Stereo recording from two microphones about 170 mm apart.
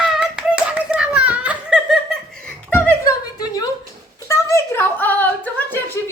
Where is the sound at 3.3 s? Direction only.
20° left (ahead or behind).